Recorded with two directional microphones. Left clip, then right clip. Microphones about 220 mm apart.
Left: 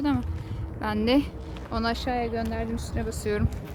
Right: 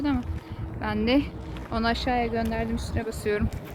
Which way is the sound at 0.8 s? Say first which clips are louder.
Even; 15° left (ahead or behind).